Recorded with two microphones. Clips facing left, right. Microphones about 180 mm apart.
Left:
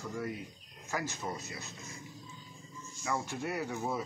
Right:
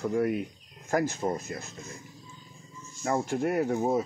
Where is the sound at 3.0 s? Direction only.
50° right (ahead or behind).